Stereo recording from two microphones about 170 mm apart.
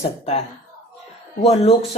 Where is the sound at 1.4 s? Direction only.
35° left (ahead or behind).